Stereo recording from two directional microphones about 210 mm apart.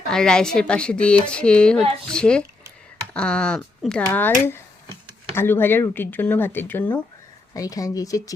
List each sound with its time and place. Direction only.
0.1 s a woman's voice: 5° left (ahead or behind)